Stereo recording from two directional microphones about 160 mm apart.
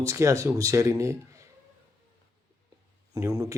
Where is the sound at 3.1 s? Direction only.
20° right (ahead or behind).